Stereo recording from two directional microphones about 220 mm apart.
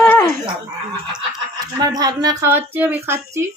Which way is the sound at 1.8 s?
15° right (ahead or behind).